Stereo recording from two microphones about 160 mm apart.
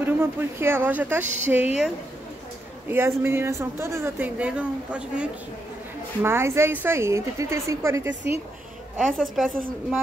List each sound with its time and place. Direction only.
0.0 s a woman's voice: 15° right (ahead or behind)
2.9 s a woman's voice: 15° right (ahead or behind)
8.9 s a woman's voice: centre (ahead or behind)